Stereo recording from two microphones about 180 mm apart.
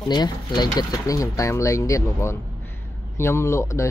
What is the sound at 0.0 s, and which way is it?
Speech, 25° left (ahead or behind).